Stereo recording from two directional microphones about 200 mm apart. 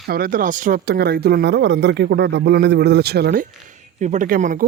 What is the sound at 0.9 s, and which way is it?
Speech, 55° right (ahead or behind).